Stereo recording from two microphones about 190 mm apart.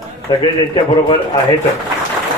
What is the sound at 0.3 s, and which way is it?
Speech, 20° left (ahead or behind).